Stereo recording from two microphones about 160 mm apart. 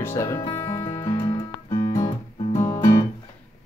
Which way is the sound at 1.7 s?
55° left (ahead or behind).